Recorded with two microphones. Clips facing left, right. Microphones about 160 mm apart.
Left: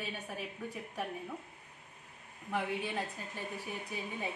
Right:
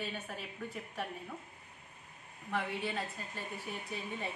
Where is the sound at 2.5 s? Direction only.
15° left (ahead or behind).